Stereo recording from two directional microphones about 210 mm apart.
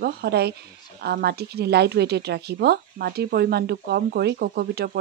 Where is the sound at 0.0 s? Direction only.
50° right (ahead or behind).